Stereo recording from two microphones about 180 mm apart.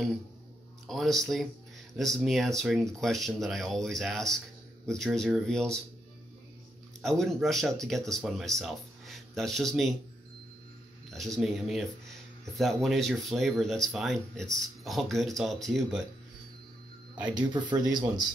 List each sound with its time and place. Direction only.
0.8 s speech: centre (ahead or behind)
7.0 s speech: centre (ahead or behind)
11.1 s speech: centre (ahead or behind)
17.2 s speech: 25° right (ahead or behind)